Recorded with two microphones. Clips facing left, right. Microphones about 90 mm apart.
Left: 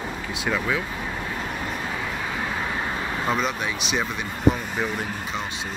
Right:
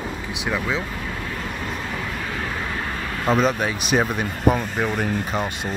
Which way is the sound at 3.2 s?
40° right (ahead or behind).